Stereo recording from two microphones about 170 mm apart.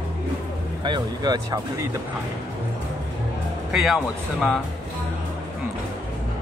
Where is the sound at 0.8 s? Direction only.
25° right (ahead or behind).